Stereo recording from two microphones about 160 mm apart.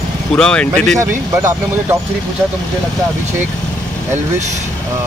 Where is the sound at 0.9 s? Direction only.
15° right (ahead or behind).